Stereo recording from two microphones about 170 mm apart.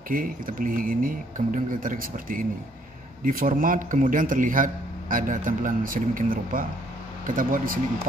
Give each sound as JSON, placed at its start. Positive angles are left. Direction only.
{"t": 0.1, "sound": "a man's voice", "side_deg": -55}